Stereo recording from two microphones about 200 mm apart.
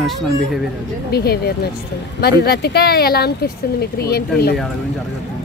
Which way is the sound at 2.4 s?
55° left (ahead or behind).